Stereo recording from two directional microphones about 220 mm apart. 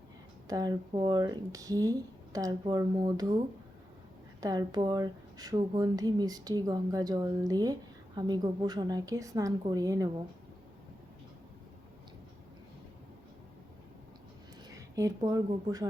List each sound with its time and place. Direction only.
0.4 s speech: 15° right (ahead or behind)
4.4 s speech: 15° right (ahead or behind)
14.8 s speech: 15° right (ahead or behind)